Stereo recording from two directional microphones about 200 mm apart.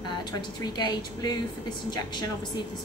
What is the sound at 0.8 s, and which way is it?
Speech, 20° left (ahead or behind).